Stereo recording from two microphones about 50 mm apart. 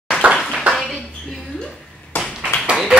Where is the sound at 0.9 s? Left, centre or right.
Centre.